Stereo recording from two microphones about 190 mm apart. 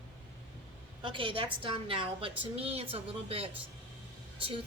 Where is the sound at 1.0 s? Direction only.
25° right (ahead or behind).